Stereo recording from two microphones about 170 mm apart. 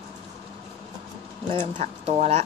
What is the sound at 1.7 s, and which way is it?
Speech, 40° right (ahead or behind).